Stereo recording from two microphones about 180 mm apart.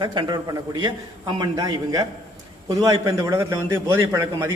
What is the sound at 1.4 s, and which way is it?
A man's voice, 20° right (ahead or behind).